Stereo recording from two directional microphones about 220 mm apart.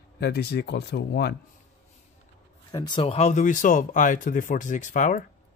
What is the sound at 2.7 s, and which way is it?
Speech, 20° left (ahead or behind).